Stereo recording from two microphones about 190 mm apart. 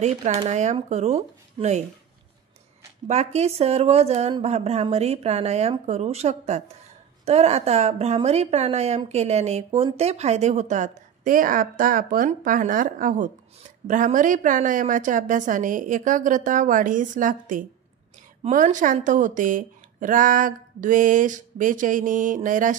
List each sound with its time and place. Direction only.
0.0 s a woman's voice: 35° right (ahead or behind)
3.1 s a woman's voice: 35° right (ahead or behind)